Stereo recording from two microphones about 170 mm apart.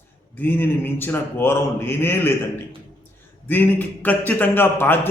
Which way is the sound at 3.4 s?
10° left (ahead or behind).